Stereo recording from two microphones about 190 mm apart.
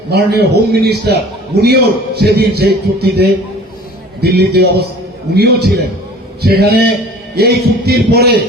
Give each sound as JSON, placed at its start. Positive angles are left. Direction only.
{"t": 0.1, "sound": "a man's voice", "side_deg": -60}